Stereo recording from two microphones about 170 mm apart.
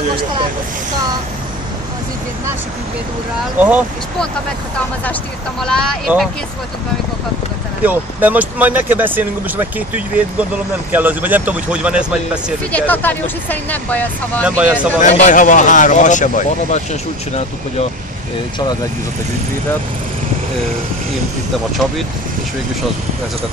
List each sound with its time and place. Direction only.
3.6 s speech: 10° right (ahead or behind)
5.6 s speech: 5° left (ahead or behind)
7.8 s speech: 10° right (ahead or behind)
12.7 s speech: 10° left (ahead or behind)
14.4 s speech: 5° right (ahead or behind)
15.0 s speech: 45° left (ahead or behind)